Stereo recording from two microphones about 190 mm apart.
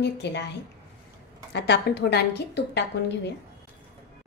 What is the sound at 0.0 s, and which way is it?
Speech, 65° left (ahead or behind).